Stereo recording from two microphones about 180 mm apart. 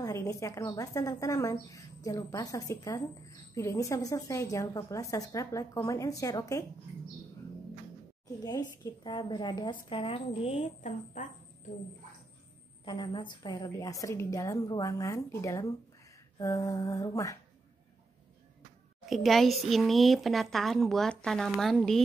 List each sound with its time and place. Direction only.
0.0 s a woman's voice: 15° left (ahead or behind)
8.5 s a woman's voice: 20° left (ahead or behind); by 11.2 s 40° left (ahead or behind)
12.8 s a woman's voice: 25° left (ahead or behind)
19.0 s speech: centre (ahead or behind)